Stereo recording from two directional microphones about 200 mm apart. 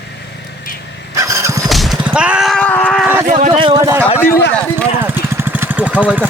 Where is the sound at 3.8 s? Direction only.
15° right (ahead or behind).